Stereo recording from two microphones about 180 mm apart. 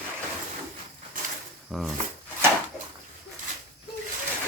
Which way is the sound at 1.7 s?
Centre (ahead or behind).